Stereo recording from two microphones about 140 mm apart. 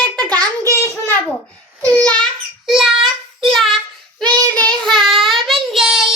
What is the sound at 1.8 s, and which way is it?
Child singing, 10° left (ahead or behind).